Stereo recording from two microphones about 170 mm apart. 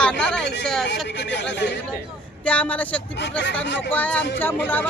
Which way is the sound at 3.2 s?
90° left.